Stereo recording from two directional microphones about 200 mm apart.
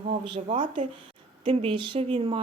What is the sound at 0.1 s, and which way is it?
A woman's voice, 25° right (ahead or behind).